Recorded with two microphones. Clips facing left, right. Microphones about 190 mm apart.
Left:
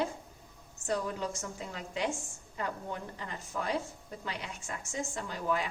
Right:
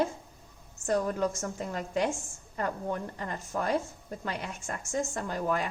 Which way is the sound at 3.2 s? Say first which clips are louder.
Right 4 dB; 50° right (ahead or behind).